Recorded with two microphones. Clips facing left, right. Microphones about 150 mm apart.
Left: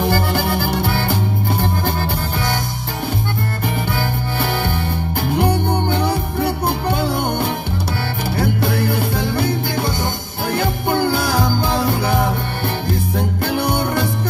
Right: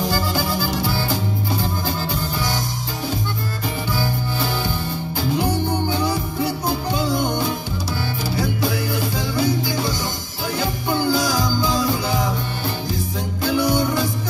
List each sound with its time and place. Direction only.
0.0 s music: 60° left (ahead or behind)
4.4 s music: 60° left (ahead or behind)